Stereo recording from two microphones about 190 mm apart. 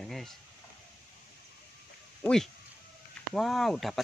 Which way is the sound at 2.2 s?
5° left (ahead or behind).